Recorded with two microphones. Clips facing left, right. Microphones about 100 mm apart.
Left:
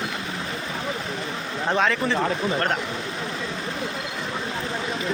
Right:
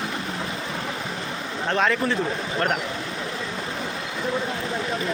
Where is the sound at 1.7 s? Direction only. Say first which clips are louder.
Even; centre (ahead or behind).